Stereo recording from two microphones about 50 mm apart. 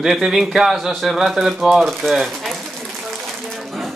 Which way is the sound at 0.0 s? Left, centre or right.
Centre.